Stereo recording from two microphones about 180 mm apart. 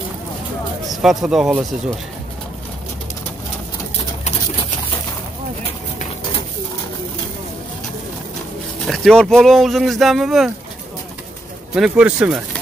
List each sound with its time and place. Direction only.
1.0 s speech: 5° right (ahead or behind)
8.8 s speech: centre (ahead or behind)
11.7 s speech: 5° right (ahead or behind)